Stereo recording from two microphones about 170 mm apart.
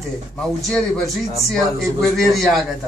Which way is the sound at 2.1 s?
Centre (ahead or behind).